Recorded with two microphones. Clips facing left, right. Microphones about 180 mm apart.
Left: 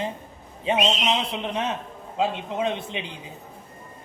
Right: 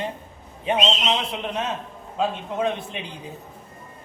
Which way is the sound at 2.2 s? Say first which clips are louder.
Right 1 dB; 20° left (ahead or behind).